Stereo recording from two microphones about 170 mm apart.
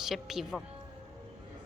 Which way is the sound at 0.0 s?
Centre (ahead or behind).